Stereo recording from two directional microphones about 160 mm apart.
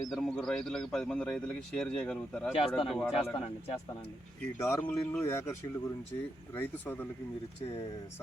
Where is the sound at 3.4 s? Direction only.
40° left (ahead or behind).